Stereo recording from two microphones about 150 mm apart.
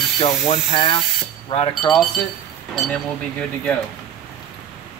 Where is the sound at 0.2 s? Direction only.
40° left (ahead or behind).